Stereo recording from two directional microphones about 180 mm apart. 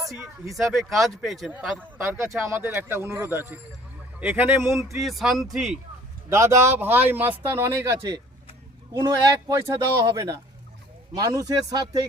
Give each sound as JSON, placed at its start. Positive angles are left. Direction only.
{"t": 0.4, "sound": "speech", "side_deg": 0}
{"t": 4.9, "sound": "speech", "side_deg": 0}
{"t": 6.2, "sound": "speech", "side_deg": -15}